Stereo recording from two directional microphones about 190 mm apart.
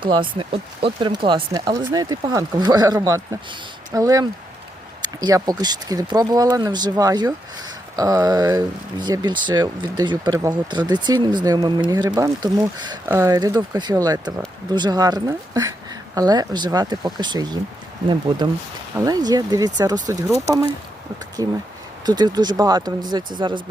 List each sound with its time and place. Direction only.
0.0 s speech: 25° right (ahead or behind)
21.4 s speech: 20° right (ahead or behind)